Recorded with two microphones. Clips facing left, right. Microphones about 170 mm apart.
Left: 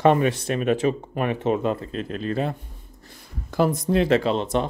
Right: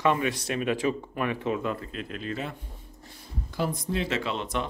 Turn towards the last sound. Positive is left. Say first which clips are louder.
# left 8 dB
turn(degrees=35)  # may be behind; listen again after turning